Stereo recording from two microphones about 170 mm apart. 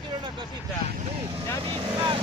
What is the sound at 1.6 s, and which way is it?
Speech, 30° right (ahead or behind).